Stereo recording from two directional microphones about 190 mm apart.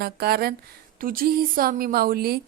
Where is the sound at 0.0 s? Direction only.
55° right (ahead or behind).